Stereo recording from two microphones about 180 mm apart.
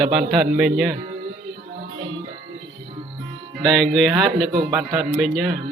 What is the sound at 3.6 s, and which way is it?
Speech, centre (ahead or behind).